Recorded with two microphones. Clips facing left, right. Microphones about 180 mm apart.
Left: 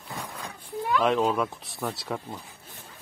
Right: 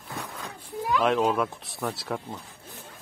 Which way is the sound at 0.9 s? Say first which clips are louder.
Even; centre (ahead or behind).